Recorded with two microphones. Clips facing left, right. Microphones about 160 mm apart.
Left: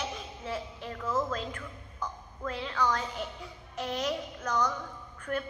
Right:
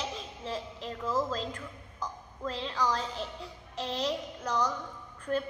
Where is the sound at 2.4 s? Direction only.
30° right (ahead or behind).